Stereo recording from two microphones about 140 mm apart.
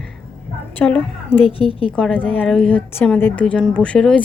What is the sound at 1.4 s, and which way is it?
Speech, 40° left (ahead or behind).